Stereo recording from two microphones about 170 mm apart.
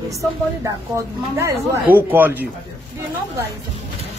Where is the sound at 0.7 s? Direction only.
15° right (ahead or behind).